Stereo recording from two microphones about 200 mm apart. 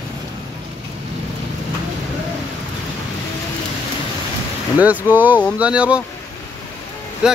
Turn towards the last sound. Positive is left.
turn(degrees=-5)  # may be behind; listen again after turning